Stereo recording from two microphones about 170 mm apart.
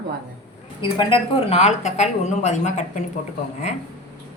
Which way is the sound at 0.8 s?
30° left (ahead or behind).